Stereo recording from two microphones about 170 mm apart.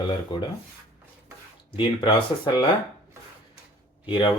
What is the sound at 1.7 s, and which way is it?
Speech, 30° left (ahead or behind).